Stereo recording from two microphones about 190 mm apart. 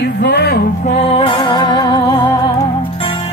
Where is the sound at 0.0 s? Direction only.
55° left (ahead or behind).